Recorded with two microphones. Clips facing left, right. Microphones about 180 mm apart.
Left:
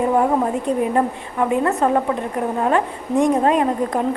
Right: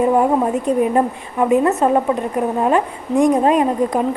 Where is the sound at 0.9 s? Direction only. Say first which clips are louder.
Right 2 dB; 20° right (ahead or behind).